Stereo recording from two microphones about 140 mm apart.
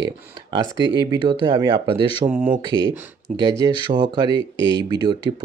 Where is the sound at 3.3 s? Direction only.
10° right (ahead or behind).